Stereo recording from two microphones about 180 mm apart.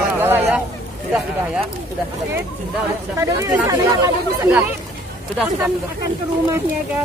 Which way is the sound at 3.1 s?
15° right (ahead or behind).